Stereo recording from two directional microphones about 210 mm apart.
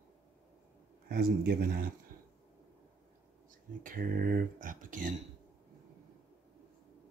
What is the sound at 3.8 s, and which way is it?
Speech, 40° right (ahead or behind).